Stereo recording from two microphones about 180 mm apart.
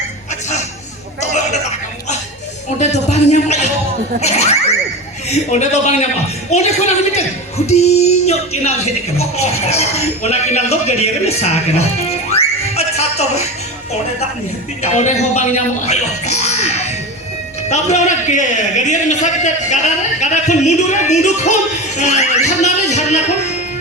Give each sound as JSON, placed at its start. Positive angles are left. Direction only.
{"t": 2.7, "sound": "music", "side_deg": 40}
{"t": 4.2, "sound": "a man's voice", "side_deg": 35}
{"t": 14.8, "sound": "a man's voice", "side_deg": 40}